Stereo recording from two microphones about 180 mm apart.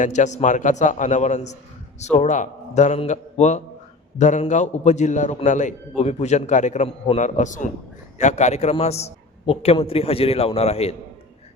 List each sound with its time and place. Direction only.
0.0 s a man's voice: 40° left (ahead or behind)